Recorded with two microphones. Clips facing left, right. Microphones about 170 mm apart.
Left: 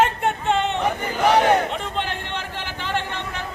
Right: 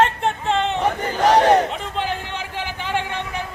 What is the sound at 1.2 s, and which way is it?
Battle cry, 40° right (ahead or behind).